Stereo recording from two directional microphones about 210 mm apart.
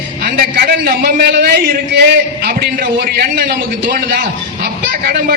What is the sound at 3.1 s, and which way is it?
A man's voice, 45° right (ahead or behind).